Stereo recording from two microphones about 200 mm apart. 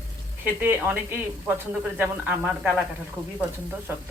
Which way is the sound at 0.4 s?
10° right (ahead or behind).